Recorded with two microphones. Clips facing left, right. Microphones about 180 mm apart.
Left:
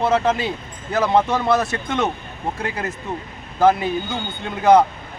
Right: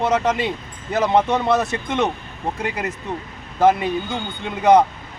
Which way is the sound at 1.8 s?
20° right (ahead or behind).